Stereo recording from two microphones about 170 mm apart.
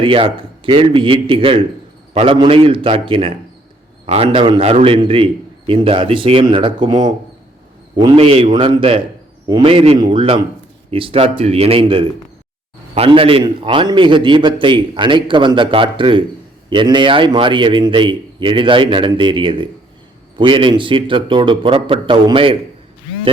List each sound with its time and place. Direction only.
0.0 s a man's voice: 30° right (ahead or behind)